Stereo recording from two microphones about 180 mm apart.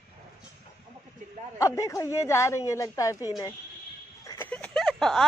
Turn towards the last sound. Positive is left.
turn(degrees=5)  # may be behind; listen again after turning